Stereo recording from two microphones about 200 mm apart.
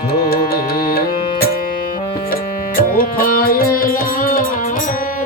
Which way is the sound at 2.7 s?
45° left (ahead or behind).